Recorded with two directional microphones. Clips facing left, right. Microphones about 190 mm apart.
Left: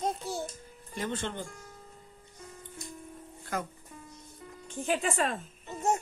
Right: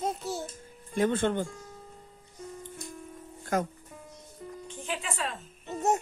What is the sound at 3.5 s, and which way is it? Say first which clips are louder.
Speech: right 6 dB; 50° right (ahead or behind).